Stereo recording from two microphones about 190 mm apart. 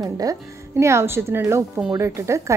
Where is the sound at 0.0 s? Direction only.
20° right (ahead or behind).